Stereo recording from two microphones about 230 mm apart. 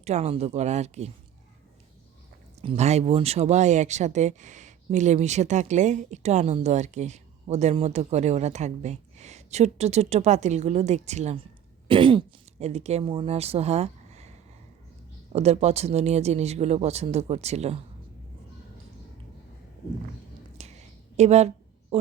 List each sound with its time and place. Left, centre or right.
0.0 s speech: right
2.6 s speech: right
15.3 s speech: right
20.6 s a sound: right